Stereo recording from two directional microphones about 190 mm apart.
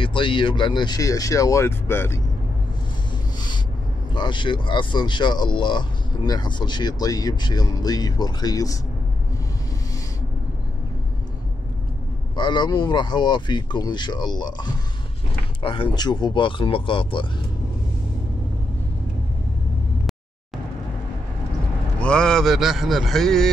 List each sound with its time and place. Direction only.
0.0 s speech: 25° left (ahead or behind)
3.3 s a sound: 25° left (ahead or behind)
4.1 s speech: 25° left (ahead or behind)
12.4 s speech: 25° left (ahead or behind)
22.0 s a man's voice: 5° left (ahead or behind)